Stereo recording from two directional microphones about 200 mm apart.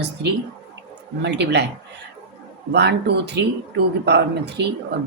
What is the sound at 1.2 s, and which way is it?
Speech, 60° right (ahead or behind).